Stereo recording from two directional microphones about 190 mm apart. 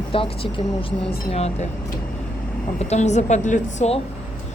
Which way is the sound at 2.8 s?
35° left (ahead or behind).